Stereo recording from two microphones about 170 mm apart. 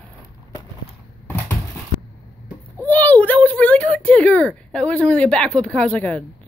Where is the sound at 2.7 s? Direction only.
10° left (ahead or behind).